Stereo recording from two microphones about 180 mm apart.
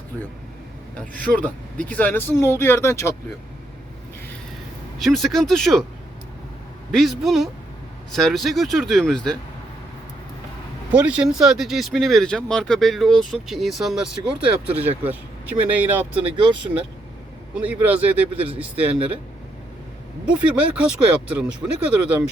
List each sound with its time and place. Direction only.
1.3 s speech: 10° left (ahead or behind)
4.9 s speech: centre (ahead or behind)
6.9 s speech: centre (ahead or behind)
10.9 s speech: 5° right (ahead or behind)
16.3 s speech: 30° right (ahead or behind)
17.5 s speech: 10° right (ahead or behind)
20.2 s speech: 5° right (ahead or behind)